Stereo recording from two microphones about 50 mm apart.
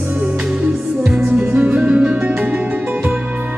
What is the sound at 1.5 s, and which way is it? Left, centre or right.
Music, right.